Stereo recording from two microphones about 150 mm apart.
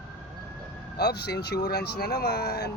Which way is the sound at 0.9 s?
90° left.